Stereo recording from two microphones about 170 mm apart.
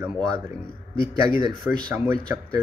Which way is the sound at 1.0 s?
25° right (ahead or behind).